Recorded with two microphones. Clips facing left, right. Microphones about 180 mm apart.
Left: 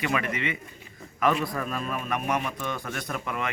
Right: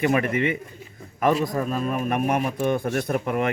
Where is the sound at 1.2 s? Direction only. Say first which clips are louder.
Right 4 dB; 35° right (ahead or behind).